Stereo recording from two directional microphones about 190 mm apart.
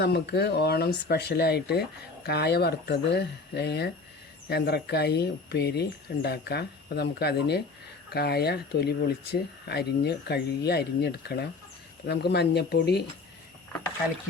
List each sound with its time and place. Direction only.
0.0 s speech: 55° left (ahead or behind)